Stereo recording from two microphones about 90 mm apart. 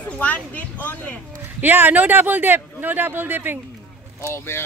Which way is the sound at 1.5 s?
20° right (ahead or behind).